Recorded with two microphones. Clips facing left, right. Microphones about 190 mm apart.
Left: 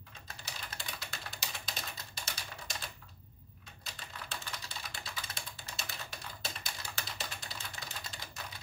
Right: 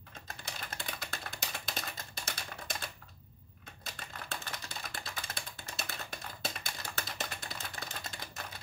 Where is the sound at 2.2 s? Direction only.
55° right (ahead or behind).